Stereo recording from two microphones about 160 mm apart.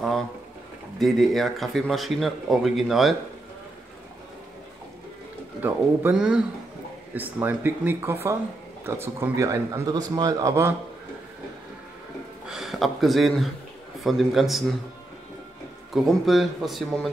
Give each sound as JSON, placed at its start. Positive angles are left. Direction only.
{"t": 0.9, "sound": "speech", "side_deg": 0}
{"t": 5.6, "sound": "a man's voice", "side_deg": -10}
{"t": 12.4, "sound": "speech", "side_deg": 0}
{"t": 15.9, "sound": "speech", "side_deg": 0}